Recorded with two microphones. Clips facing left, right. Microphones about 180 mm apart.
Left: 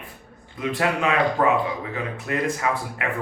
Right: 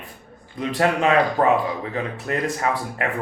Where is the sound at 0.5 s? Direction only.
40° right (ahead or behind).